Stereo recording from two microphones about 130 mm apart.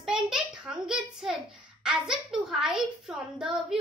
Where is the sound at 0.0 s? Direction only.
5° right (ahead or behind).